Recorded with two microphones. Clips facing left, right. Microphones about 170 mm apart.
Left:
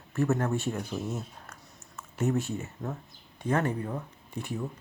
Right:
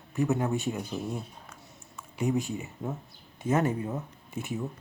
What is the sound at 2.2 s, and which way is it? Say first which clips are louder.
Speech: even; 15° right (ahead or behind).